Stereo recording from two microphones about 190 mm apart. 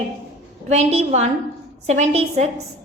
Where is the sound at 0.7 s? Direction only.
35° right (ahead or behind).